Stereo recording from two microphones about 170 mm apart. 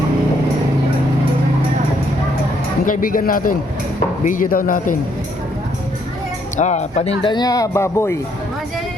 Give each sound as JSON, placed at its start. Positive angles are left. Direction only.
{"t": 2.8, "sound": "a man's voice", "side_deg": 55}
{"t": 6.6, "sound": "speech", "side_deg": 40}